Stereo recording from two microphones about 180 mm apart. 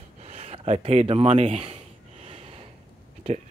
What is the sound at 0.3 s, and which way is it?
Speech, 35° right (ahead or behind).